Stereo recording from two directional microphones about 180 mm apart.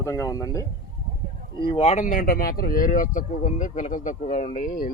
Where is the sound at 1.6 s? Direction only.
30° left (ahead or behind).